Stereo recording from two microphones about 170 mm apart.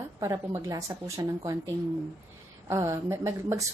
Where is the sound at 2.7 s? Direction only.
15° right (ahead or behind).